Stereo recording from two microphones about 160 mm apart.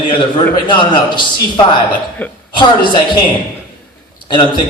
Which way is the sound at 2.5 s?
30° left (ahead or behind).